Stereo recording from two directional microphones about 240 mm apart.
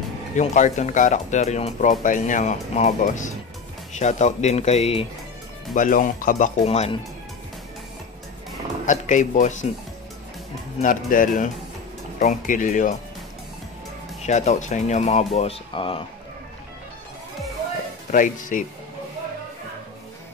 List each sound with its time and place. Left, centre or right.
0.4 s speech: left
8.8 s speech: left
10.8 s speech: left
14.2 s speech: left
18.1 s speech: left